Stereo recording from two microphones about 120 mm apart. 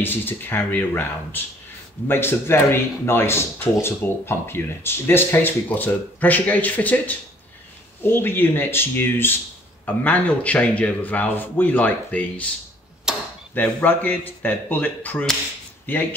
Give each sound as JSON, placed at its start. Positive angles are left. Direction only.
{"t": 0.0, "sound": "a man's voice", "side_deg": 15}
{"t": 13.1, "sound": "a sound", "side_deg": -5}
{"t": 13.6, "sound": "a man's voice", "side_deg": 15}